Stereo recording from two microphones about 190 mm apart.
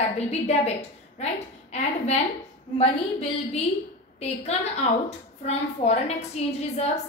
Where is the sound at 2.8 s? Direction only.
35° left (ahead or behind).